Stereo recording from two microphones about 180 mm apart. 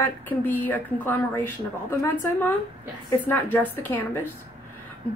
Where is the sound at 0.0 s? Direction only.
10° left (ahead or behind).